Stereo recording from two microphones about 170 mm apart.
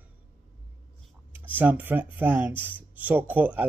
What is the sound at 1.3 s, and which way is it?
Speech, 10° right (ahead or behind).